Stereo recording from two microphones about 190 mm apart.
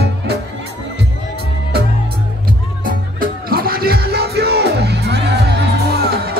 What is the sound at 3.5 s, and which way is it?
Music, 50° right (ahead or behind).